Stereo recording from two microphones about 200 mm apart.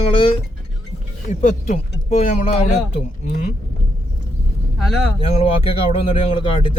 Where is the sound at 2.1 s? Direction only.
35° left (ahead or behind).